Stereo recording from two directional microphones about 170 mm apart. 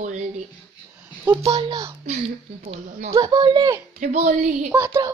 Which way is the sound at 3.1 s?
20° right (ahead or behind).